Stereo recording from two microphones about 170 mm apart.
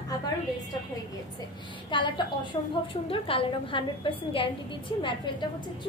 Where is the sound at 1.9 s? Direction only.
25° left (ahead or behind).